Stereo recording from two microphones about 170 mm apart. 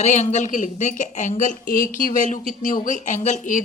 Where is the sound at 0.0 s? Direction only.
45° left (ahead or behind).